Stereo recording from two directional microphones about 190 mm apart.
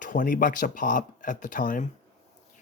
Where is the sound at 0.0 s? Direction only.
45° left (ahead or behind).